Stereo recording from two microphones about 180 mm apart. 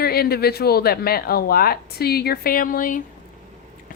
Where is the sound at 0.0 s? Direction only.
60° left (ahead or behind).